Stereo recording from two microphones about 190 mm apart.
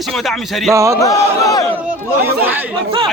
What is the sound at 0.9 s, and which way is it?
Speech, 15° left (ahead or behind).